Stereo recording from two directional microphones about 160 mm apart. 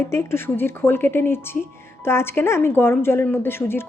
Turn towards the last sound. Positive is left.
turn(degrees=15)  # may be behind; listen again after turning